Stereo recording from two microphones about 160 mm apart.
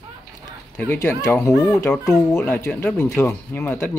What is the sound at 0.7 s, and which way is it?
Speech, 15° left (ahead or behind).